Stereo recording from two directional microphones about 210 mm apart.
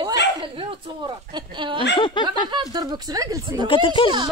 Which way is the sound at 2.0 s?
25° left (ahead or behind).